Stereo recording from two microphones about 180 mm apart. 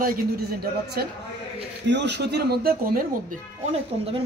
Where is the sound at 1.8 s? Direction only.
75° right (ahead or behind); by 3.0 s 55° right (ahead or behind).